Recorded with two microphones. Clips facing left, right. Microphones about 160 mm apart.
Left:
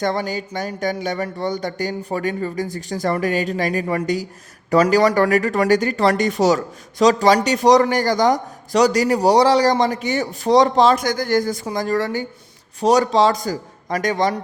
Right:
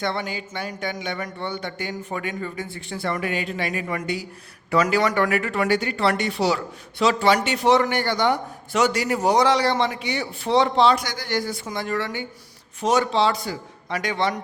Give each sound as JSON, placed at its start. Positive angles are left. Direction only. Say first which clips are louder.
{"t": 0.0, "sound": "a man's voice", "louder": "left 5 dB", "side_deg": 40}